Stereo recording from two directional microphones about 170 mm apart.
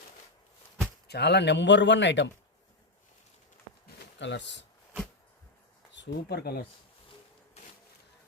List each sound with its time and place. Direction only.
1.0 s speech: 75° left (ahead or behind)
4.2 s speech: 90° left
5.9 s speech: 90° left; by 6.7 s 65° left (ahead or behind)